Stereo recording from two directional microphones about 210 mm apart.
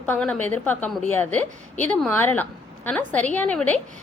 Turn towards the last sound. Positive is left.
turn(degrees=5)  # may be behind; listen again after turning